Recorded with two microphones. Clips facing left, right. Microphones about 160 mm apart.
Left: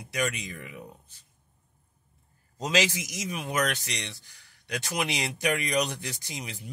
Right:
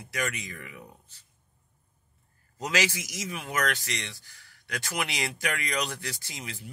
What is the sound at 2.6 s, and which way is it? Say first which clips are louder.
Speech: left 2 dB; 20° left (ahead or behind).